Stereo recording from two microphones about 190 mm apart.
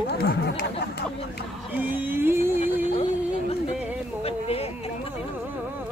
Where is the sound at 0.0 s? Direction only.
60° left (ahead or behind).